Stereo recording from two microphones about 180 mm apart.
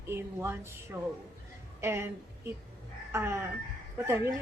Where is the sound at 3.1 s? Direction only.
15° right (ahead or behind).